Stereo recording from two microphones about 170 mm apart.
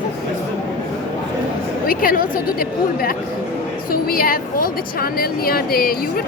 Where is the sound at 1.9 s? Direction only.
55° left (ahead or behind).